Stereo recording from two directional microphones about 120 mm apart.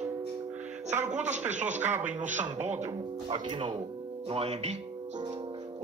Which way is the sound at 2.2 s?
90° right.